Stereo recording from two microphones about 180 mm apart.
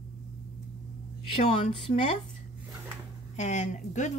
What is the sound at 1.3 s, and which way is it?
Speech, 35° left (ahead or behind).